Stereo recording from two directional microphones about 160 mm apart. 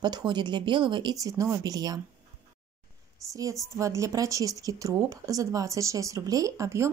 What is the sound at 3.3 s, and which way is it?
Speech, 20° right (ahead or behind).